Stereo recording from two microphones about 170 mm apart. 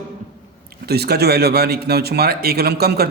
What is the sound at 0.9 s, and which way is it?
Speech, 70° right (ahead or behind).